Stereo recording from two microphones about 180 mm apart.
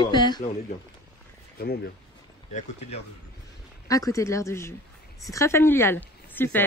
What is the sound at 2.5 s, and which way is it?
Speech, 40° left (ahead or behind).